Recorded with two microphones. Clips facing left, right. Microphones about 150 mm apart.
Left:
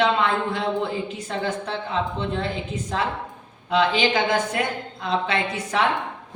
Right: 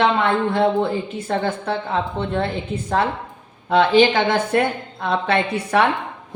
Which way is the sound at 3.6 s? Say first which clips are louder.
Right 6 dB; 55° right (ahead or behind).